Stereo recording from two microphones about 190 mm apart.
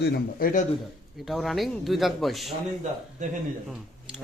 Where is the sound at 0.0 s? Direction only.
55° left (ahead or behind).